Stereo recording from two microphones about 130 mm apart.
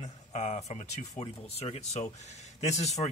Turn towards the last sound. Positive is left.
turn(degrees=60)  # may be behind; listen again after turning